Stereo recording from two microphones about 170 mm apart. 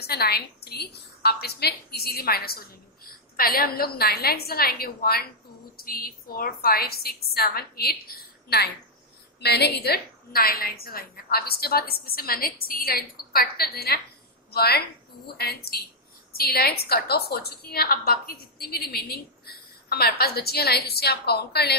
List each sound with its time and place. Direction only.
0.0 s a woman's voice: 70° left (ahead or behind)